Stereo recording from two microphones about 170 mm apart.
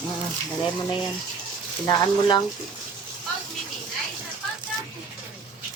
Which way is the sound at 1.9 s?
25° left (ahead or behind).